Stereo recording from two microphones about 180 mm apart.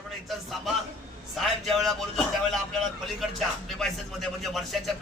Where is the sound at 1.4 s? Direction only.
Centre (ahead or behind).